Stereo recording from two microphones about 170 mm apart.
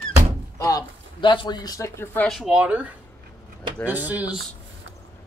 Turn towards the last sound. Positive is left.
turn(degrees=-10)  # may be behind; listen again after turning